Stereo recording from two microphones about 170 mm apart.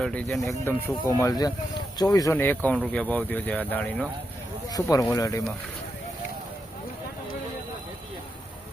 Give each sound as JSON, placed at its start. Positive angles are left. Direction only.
{"t": 0.0, "sound": "speech", "side_deg": 5}
{"t": 4.7, "sound": "speech", "side_deg": 20}